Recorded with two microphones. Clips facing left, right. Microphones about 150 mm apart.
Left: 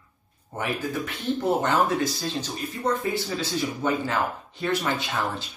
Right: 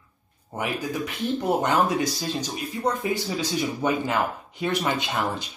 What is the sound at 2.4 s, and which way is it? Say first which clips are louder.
Speech: right 1 dB; 15° right (ahead or behind).